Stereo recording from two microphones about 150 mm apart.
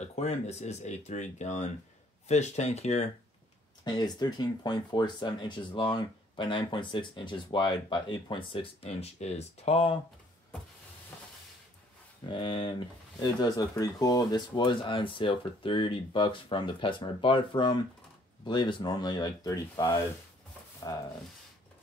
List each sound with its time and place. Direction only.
0.0 s speech: 50° left (ahead or behind)
3.8 s speech: 30° left (ahead or behind)
12.3 s speech: 35° left (ahead or behind)